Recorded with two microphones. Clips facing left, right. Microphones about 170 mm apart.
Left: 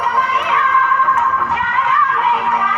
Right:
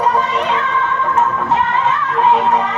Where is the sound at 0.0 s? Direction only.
25° right (ahead or behind).